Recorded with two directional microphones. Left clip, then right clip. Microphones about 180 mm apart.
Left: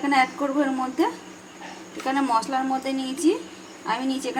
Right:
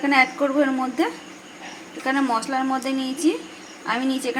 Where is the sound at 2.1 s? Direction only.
10° right (ahead or behind).